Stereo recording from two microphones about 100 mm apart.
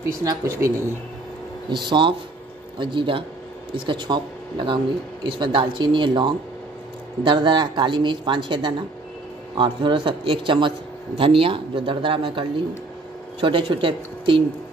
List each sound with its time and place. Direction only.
0.0 s speech: 35° right (ahead or behind)
1.7 s a man's voice: 50° right (ahead or behind)